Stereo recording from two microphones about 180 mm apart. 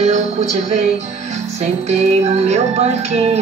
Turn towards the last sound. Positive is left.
turn(degrees=-35)  # may be behind; listen again after turning